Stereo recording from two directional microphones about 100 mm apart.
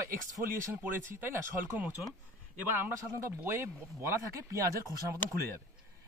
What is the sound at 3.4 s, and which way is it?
Speech, 25° right (ahead or behind).